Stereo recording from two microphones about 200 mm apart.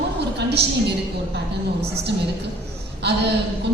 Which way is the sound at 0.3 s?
55° right (ahead or behind).